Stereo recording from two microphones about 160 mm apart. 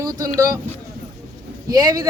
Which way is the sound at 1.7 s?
25° right (ahead or behind).